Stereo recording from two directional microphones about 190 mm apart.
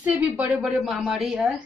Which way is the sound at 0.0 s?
10° right (ahead or behind).